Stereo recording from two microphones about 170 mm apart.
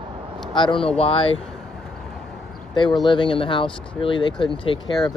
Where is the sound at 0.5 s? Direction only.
30° left (ahead or behind).